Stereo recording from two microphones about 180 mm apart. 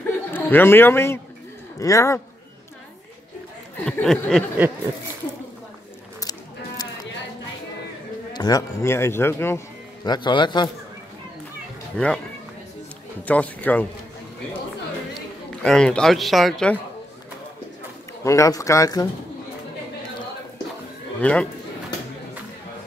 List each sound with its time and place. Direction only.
0.0 s chuckle: 10° left (ahead or behind)
1.8 s speech: 15° left (ahead or behind)
3.8 s speech: 5° left (ahead or behind)
8.3 s speech: 20° left (ahead or behind)
10.0 s a man's voice: 25° left (ahead or behind)
12.0 s speech: 5° left (ahead or behind)
13.2 s speech: 10° left (ahead or behind)
15.6 s speech: 5° left (ahead or behind)
18.2 s speech: 15° left (ahead or behind)
21.2 s speech: 5° left (ahead or behind)